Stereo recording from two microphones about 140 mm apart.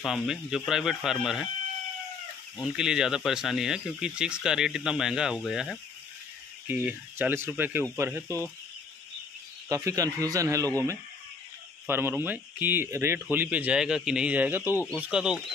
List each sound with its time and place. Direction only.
0.0 s speech: centre (ahead or behind)
2.5 s speech: 5° right (ahead or behind)
6.7 s a man's voice: 10° right (ahead or behind)
9.7 s a man's voice: 25° right (ahead or behind)
11.9 s speech: 15° right (ahead or behind)